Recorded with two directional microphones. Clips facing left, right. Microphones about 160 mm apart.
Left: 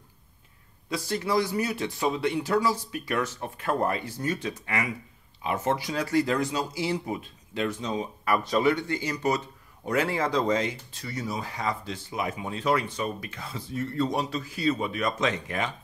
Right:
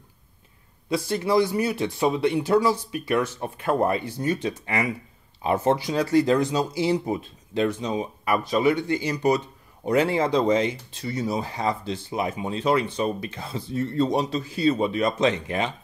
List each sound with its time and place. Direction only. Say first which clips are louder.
0.8 s speech: right 5 dB; 25° right (ahead or behind)
7.8 s speech: right 3 dB; 15° right (ahead or behind)